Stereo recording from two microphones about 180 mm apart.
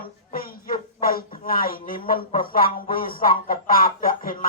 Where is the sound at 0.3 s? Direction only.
55° left (ahead or behind).